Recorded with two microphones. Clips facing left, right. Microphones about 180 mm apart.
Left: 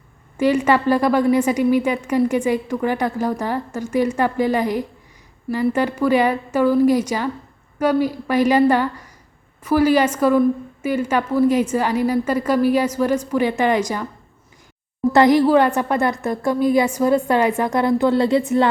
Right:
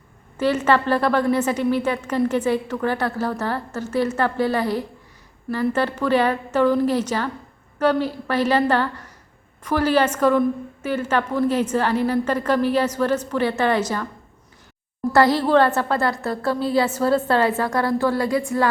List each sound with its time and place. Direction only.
0.3 s a woman's voice: 10° left (ahead or behind)
15.1 s a woman's voice: 15° left (ahead or behind)